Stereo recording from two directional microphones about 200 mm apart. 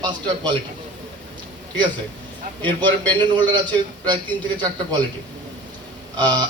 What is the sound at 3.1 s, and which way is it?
Speech, 20° right (ahead or behind).